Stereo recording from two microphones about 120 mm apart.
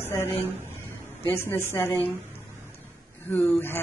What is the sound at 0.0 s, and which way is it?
Speech, 20° left (ahead or behind).